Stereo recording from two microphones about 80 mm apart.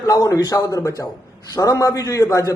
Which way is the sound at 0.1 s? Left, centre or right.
Left.